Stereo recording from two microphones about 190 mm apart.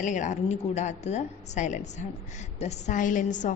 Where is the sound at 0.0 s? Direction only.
40° left (ahead or behind).